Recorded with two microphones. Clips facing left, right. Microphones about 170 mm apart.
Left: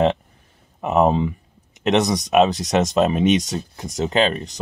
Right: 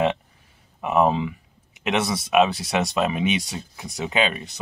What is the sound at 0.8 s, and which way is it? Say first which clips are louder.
Speech: left 3 dB; 40° left (ahead or behind).